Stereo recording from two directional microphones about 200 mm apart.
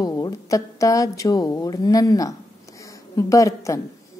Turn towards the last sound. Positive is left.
turn(degrees=15)  # may be behind; listen again after turning